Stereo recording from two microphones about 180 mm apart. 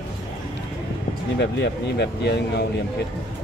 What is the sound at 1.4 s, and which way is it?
Speech, 70° left (ahead or behind).